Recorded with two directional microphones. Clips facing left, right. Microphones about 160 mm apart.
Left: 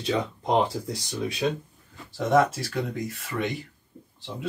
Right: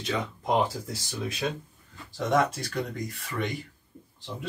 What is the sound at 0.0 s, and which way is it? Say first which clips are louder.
Speech: left 4 dB; 30° left (ahead or behind).